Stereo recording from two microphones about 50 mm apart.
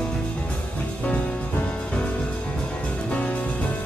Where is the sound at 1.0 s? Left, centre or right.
Left.